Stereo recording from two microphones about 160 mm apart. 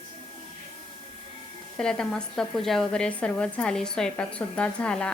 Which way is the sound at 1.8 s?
5° left (ahead or behind).